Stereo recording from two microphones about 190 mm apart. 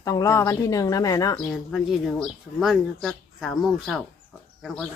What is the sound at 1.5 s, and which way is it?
Speech, centre (ahead or behind).